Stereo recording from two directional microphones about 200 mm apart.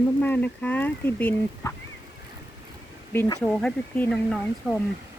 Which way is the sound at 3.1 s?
10° left (ahead or behind).